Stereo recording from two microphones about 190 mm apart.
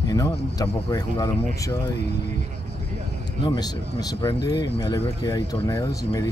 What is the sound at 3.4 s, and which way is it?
Speech, 20° left (ahead or behind).